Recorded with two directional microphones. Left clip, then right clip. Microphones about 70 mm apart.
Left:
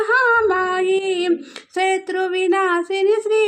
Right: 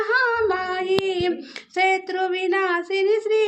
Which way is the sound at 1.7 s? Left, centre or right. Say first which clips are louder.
Left 1 dB; left.